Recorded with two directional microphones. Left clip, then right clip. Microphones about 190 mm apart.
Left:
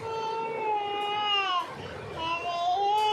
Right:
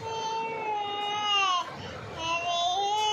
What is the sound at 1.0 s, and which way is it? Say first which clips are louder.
Baby cry: right 3 dB; 15° left (ahead or behind).